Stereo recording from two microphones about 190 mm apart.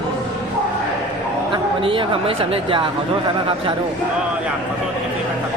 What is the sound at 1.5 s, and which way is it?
Speech, 30° right (ahead or behind).